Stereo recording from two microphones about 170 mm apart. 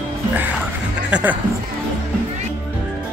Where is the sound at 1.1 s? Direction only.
10° right (ahead or behind).